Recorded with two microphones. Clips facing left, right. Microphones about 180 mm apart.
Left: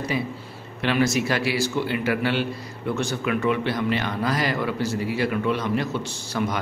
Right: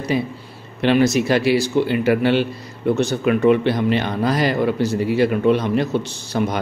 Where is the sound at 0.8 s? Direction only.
20° right (ahead or behind).